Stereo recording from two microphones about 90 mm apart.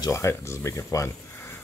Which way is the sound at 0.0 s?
30° left (ahead or behind).